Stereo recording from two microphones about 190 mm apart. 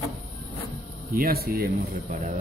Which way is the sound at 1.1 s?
55° right (ahead or behind).